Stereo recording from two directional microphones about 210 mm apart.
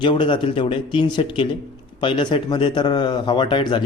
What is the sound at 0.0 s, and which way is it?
A man's voice, 25° left (ahead or behind).